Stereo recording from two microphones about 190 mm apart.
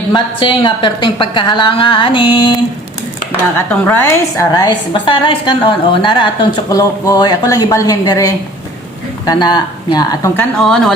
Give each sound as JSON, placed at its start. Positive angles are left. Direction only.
{"t": 0.1, "sound": "a woman's voice", "side_deg": 25}
{"t": 3.8, "sound": "a woman's voice", "side_deg": 10}
{"t": 10.6, "sound": "speech", "side_deg": 0}